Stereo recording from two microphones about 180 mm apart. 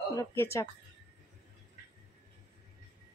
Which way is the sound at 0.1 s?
15° left (ahead or behind).